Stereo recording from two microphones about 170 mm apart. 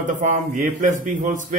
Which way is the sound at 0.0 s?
50° right (ahead or behind).